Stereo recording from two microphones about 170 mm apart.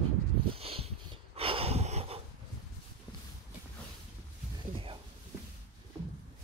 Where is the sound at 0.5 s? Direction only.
35° right (ahead or behind).